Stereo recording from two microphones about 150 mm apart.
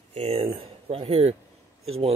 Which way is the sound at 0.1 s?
45° right (ahead or behind).